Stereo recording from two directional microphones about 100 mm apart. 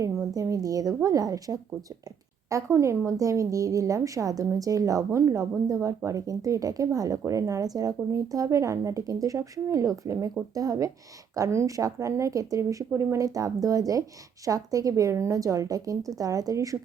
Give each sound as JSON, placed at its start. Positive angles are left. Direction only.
{"t": 0.0, "sound": "a woman's voice", "side_deg": -35}